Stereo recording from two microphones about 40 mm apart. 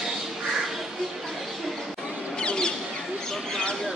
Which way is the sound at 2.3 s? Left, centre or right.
Left.